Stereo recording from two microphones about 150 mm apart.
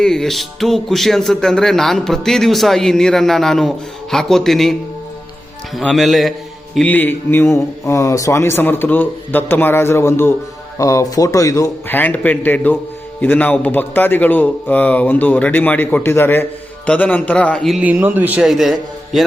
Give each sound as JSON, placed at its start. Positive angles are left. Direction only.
{"t": 0.0, "sound": "music", "side_deg": 5}
{"t": 5.7, "sound": "music", "side_deg": 0}
{"t": 6.7, "sound": "a man's voice", "side_deg": 10}
{"t": 17.8, "sound": "a man's voice", "side_deg": -10}